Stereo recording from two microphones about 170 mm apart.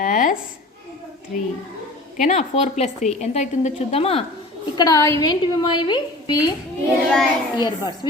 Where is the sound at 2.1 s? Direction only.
40° left (ahead or behind).